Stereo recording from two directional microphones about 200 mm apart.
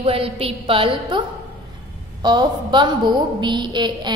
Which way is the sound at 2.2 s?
20° right (ahead or behind).